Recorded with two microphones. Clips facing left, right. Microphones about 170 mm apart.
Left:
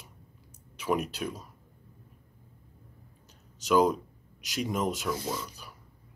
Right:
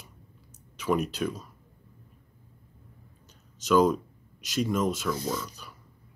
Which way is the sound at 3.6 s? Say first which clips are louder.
Right 2 dB; 10° left (ahead or behind).